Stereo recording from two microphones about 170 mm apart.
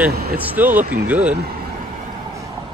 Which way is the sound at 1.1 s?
10° right (ahead or behind).